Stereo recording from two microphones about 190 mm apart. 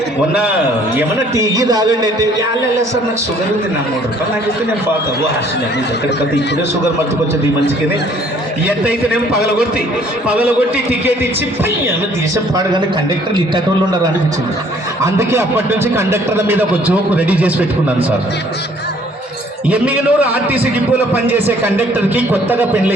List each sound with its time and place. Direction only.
0.9 s a man's voice: 15° right (ahead or behind)
8.6 s speech: 5° right (ahead or behind)
10.2 s speech: 10° right (ahead or behind)
15.0 s speech: 15° right (ahead or behind)
19.6 s speech: 5° right (ahead or behind)